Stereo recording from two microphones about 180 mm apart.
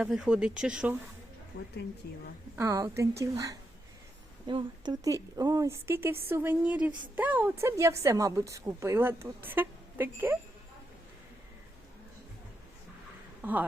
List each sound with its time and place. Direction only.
0.0 s speech: 5° right (ahead or behind)
2.6 s a woman's voice: 15° right (ahead or behind)
13.4 s speech: 10° right (ahead or behind)